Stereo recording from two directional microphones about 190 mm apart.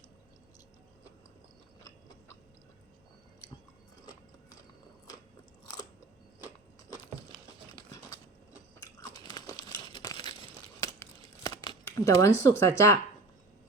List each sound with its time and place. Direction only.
4.0 s biting: 20° left (ahead or behind)
8.8 s biting: 20° left (ahead or behind)
9.6 s crumpling: 20° left (ahead or behind)
12.5 s speech: 15° left (ahead or behind)